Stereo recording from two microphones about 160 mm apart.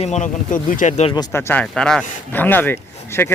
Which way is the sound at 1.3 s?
15° left (ahead or behind).